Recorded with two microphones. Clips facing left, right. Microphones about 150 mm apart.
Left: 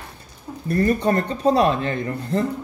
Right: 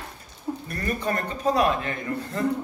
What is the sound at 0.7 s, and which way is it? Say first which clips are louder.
Speech: left 10 dB; 35° left (ahead or behind).